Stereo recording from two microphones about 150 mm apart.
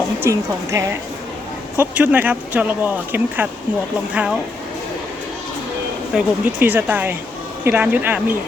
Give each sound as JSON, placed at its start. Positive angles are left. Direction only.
{"t": 0.2, "sound": "a woman's voice", "side_deg": -20}
{"t": 6.1, "sound": "speech", "side_deg": -10}